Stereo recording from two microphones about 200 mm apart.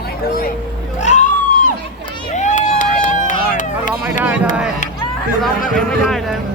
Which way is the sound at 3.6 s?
40° left (ahead or behind).